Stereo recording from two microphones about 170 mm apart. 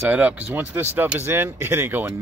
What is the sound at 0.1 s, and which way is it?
Speech, 10° right (ahead or behind).